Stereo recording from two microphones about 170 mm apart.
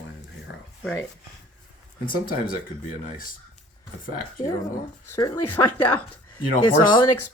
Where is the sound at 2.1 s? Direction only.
55° left (ahead or behind).